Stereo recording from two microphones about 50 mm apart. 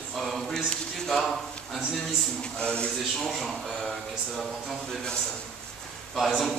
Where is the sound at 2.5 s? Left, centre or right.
Centre.